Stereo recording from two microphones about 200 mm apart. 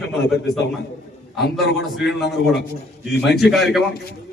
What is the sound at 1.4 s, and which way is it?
Speech, 55° left (ahead or behind).